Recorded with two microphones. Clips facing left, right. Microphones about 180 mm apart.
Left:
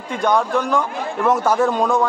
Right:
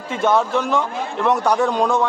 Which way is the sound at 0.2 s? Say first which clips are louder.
Even; centre (ahead or behind).